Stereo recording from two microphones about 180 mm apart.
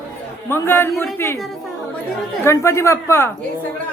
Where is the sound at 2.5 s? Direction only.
15° left (ahead or behind).